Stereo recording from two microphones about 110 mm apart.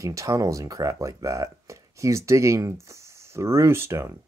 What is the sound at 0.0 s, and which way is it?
Speech, 30° right (ahead or behind).